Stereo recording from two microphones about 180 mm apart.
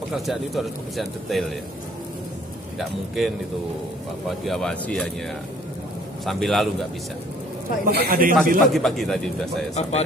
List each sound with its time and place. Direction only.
0.1 s speech: centre (ahead or behind)
2.8 s speech: centre (ahead or behind)
4.5 s speech: 5° left (ahead or behind)
6.2 s speech: centre (ahead or behind)
7.8 s a man's voice: 50° right (ahead or behind)
8.5 s speech: centre (ahead or behind)
9.8 s speech: 35° left (ahead or behind)